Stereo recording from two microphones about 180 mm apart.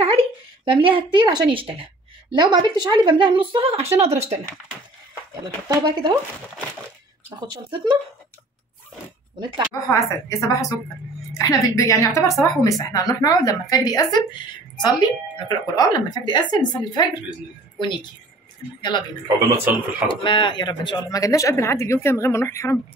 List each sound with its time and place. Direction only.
0.0 s speech: 30° right (ahead or behind)
5.3 s speech: 20° right (ahead or behind)
7.3 s speech: 25° right (ahead or behind)
9.8 s a woman's voice: 15° left (ahead or behind)
20.1 s a woman's voice: 25° left (ahead or behind)